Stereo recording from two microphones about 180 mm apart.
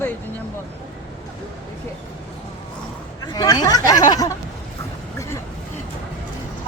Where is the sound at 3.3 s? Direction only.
20° left (ahead or behind).